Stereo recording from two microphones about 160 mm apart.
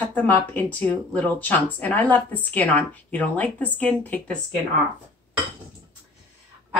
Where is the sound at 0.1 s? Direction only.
10° left (ahead or behind).